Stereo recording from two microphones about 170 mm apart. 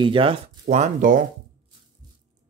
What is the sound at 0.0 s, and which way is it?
Speech, 30° right (ahead or behind).